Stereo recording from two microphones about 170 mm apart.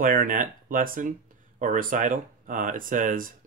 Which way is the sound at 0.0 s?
50° right (ahead or behind).